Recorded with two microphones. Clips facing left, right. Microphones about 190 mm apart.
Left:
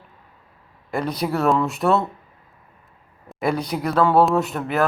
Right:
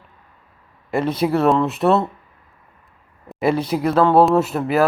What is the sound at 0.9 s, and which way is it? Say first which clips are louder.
Speech: right 5 dB; centre (ahead or behind).